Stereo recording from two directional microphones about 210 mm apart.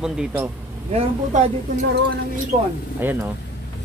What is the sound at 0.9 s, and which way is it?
Speech, 30° right (ahead or behind).